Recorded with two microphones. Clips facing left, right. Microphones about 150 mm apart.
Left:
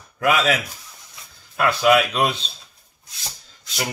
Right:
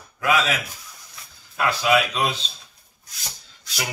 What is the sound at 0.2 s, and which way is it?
Speech, 55° left (ahead or behind).